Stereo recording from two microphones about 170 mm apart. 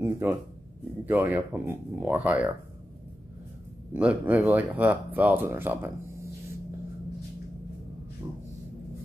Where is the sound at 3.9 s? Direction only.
10° right (ahead or behind).